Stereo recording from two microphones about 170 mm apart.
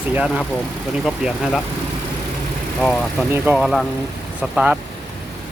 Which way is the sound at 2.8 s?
Centre (ahead or behind).